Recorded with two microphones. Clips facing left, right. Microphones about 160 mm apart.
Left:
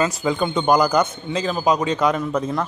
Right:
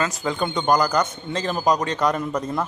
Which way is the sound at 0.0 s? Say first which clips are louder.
Left 4 dB; 10° left (ahead or behind).